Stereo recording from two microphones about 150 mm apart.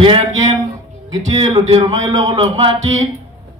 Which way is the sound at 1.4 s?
40° right (ahead or behind).